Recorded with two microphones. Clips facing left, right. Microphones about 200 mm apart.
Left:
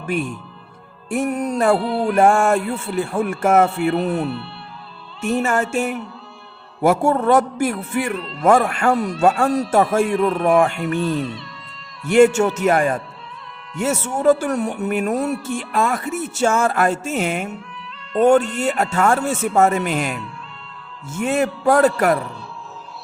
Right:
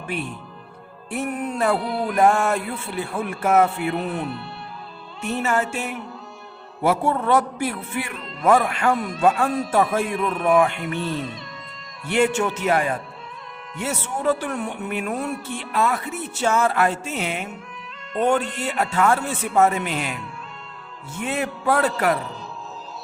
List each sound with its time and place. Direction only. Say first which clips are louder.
1.1 s speech: left 5 dB; 45° left (ahead or behind)
5.2 s speech: left 4 dB; 45° left (ahead or behind)
12.0 s speech: left 7 dB; 45° left (ahead or behind)
21.2 s speech: left 6 dB; 45° left (ahead or behind)